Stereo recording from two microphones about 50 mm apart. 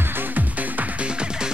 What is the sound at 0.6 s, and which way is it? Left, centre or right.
Music, right.